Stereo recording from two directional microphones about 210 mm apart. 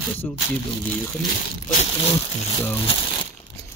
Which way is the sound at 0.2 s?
10° left (ahead or behind).